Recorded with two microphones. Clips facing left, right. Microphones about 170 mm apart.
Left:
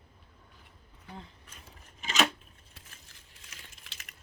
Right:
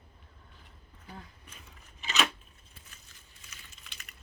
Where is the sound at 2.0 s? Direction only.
45° left (ahead or behind).